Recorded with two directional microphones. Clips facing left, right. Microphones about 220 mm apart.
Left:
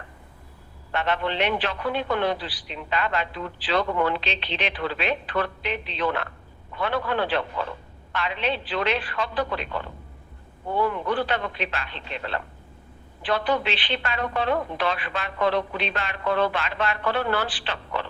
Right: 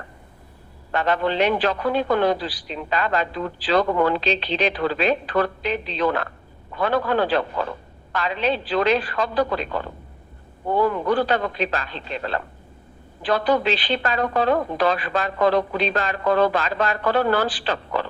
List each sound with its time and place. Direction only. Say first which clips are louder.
0.9 s a man's voice: right 4 dB; 40° right (ahead or behind)